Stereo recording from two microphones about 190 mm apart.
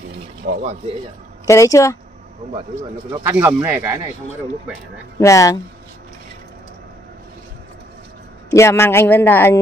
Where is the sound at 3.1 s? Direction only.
15° right (ahead or behind).